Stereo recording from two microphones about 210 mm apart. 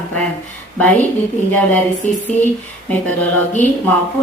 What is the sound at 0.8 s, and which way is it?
Speech, 5° left (ahead or behind).